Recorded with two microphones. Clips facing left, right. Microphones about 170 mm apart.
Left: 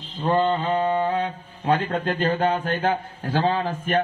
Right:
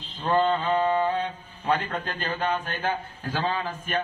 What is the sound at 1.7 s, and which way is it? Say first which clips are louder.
A man's voice: left 5 dB; 30° left (ahead or behind).